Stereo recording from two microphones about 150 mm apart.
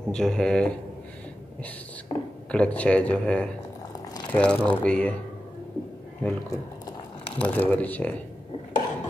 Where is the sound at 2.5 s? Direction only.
10° left (ahead or behind).